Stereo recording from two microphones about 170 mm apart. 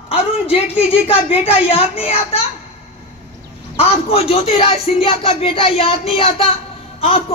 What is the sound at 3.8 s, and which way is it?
A man's voice, 35° left (ahead or behind).